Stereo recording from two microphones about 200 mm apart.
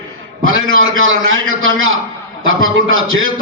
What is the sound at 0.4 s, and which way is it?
A man's voice, 80° right.